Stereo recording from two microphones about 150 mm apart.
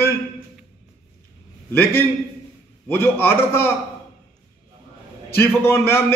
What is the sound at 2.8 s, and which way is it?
Speech, 15° left (ahead or behind).